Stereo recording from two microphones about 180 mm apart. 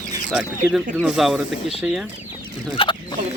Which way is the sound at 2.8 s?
30° left (ahead or behind).